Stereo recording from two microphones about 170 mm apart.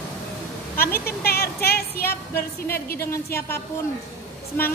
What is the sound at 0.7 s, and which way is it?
Speech, 60° left (ahead or behind).